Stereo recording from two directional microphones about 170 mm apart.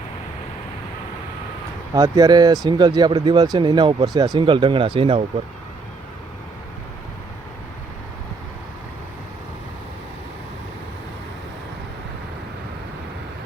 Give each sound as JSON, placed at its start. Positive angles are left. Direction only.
{"t": 1.9, "sound": "speech", "side_deg": -20}